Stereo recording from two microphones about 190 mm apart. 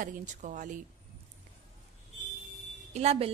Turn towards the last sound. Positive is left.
turn(degrees=-35)  # may be behind; listen again after turning